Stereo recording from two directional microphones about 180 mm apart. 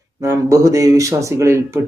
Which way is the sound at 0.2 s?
15° right (ahead or behind).